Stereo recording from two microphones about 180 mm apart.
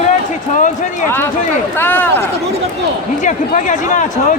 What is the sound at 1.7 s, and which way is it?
Speech, 10° left (ahead or behind).